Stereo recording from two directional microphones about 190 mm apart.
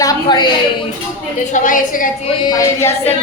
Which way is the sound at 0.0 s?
20° left (ahead or behind).